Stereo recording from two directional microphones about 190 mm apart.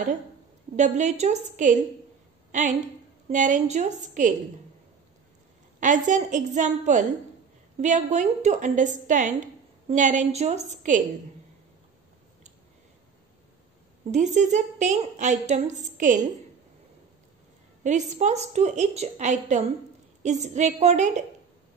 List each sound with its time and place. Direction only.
0.7 s a woman's voice: 40° right (ahead or behind)
5.8 s a woman's voice: 40° right (ahead or behind)
14.1 s a woman's voice: 40° right (ahead or behind)
17.8 s a woman's voice: 40° right (ahead or behind)